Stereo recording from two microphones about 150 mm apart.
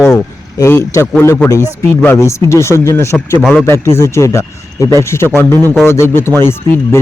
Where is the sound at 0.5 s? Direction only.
20° left (ahead or behind).